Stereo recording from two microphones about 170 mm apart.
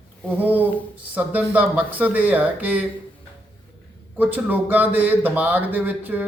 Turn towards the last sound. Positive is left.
turn(degrees=-10)  # may be behind; listen again after turning